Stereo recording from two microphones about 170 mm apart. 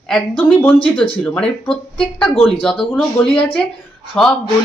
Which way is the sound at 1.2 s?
10° left (ahead or behind).